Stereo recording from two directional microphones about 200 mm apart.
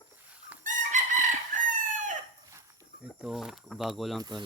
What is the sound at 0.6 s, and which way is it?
Chicken, 40° right (ahead or behind).